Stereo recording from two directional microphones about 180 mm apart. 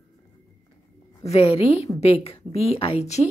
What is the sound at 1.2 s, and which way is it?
A woman's voice, 35° left (ahead or behind).